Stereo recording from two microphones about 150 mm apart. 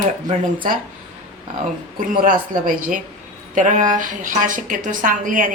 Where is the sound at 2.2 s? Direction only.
60° right (ahead or behind).